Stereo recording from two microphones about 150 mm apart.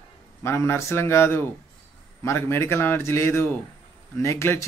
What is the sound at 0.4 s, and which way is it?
Speech, 15° left (ahead or behind).